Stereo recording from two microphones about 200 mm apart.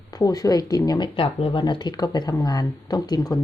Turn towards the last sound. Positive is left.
turn(degrees=20)  # may be behind; listen again after turning